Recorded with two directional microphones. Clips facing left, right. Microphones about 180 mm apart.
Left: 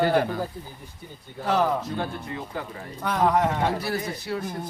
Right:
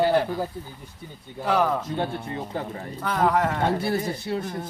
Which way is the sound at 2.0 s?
25° right (ahead or behind).